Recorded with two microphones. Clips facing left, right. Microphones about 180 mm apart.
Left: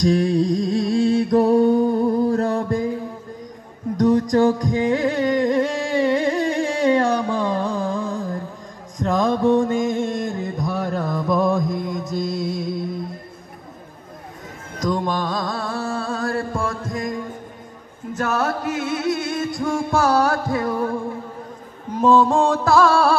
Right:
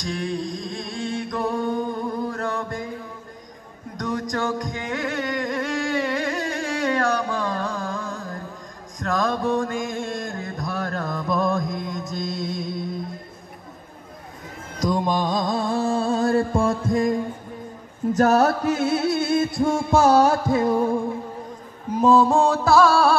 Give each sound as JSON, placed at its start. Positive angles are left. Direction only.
{"t": 0.0, "sound": "music", "side_deg": 40}
{"t": 4.0, "sound": "music", "side_deg": 30}
{"t": 14.8, "sound": "music", "side_deg": -10}
{"t": 18.1, "sound": "music", "side_deg": -40}
{"t": 22.0, "sound": "music", "side_deg": -5}